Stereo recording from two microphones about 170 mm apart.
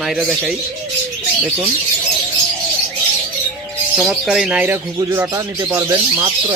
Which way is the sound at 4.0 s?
Centre (ahead or behind).